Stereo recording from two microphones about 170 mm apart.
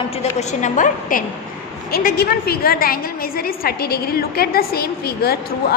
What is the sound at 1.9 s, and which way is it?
A woman's voice, 60° left (ahead or behind).